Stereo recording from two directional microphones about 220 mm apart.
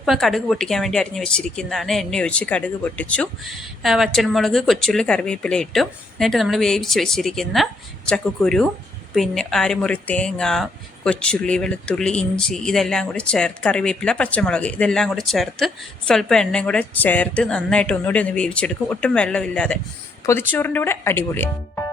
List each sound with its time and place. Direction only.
0.0 s a woman's voice: centre (ahead or behind)